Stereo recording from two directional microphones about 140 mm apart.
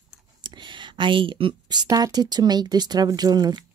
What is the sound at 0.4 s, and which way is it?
Speech, 35° right (ahead or behind).